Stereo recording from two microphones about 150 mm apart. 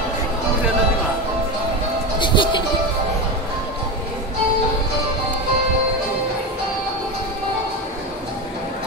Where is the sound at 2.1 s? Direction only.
30° left (ahead or behind).